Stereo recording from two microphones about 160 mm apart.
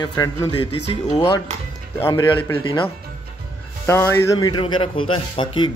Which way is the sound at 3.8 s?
15° left (ahead or behind).